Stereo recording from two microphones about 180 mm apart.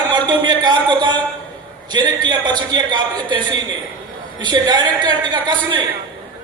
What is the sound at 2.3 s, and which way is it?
A man's voice, 25° right (ahead or behind).